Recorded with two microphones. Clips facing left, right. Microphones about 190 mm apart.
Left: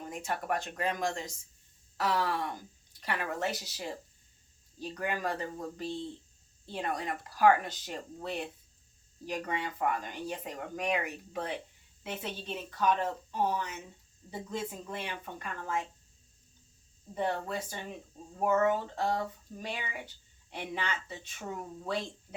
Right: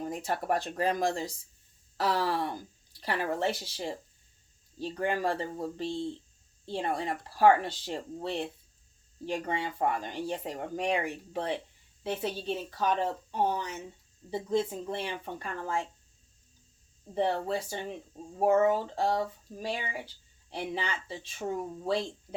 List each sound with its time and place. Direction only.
0.1 s speech: 35° right (ahead or behind)
17.2 s speech: 30° right (ahead or behind)